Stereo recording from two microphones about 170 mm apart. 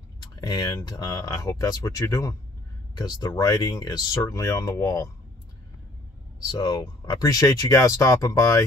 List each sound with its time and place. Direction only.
0.4 s speech: 20° left (ahead or behind)
6.4 s speech: 25° left (ahead or behind)